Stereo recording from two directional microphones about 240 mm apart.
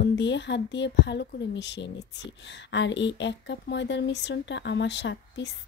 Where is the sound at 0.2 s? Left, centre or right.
Left.